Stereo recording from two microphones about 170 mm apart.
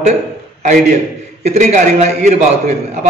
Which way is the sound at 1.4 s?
40° right (ahead or behind).